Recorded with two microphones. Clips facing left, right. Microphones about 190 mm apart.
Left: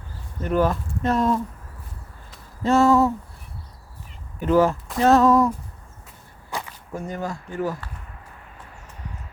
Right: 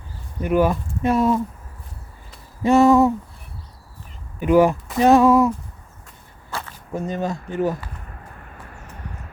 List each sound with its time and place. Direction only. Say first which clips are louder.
0.3 s speech: right 3 dB; 10° right (ahead or behind)
2.6 s a sound: right 3 dB; 15° right (ahead or behind)
4.4 s speech: right 3 dB; 15° right (ahead or behind)
4.9 s a sound: right 2 dB; 15° right (ahead or behind)
6.5 s whip: even; 15° left (ahead or behind)
6.9 s speech: right 4 dB; 20° right (ahead or behind)